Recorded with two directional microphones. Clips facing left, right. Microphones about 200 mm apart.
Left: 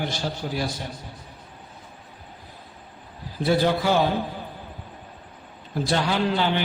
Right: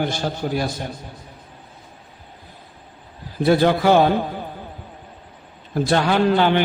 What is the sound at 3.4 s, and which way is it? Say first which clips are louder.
Speech: right 5 dB; 60° right (ahead or behind).